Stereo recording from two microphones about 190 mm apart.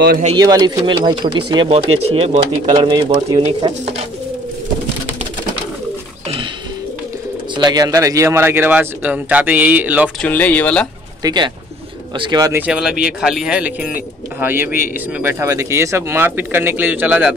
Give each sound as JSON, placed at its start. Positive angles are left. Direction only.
{"t": 0.3, "sound": "speech", "side_deg": -20}
{"t": 7.5, "sound": "speech", "side_deg": -20}
{"t": 10.2, "sound": "speech", "side_deg": 10}
{"t": 11.2, "sound": "speech", "side_deg": -25}
{"t": 12.6, "sound": "speech", "side_deg": -5}